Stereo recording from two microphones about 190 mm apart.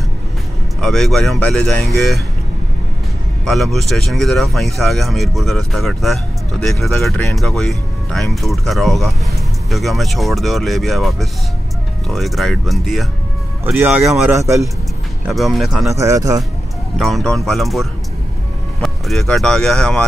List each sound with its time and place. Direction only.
0.7 s speech: centre (ahead or behind)
3.4 s speech: centre (ahead or behind)
14.3 s speech: 15° right (ahead or behind)
15.2 s speech: centre (ahead or behind)
15.9 s speech: 15° right (ahead or behind)
17.0 s speech: centre (ahead or behind)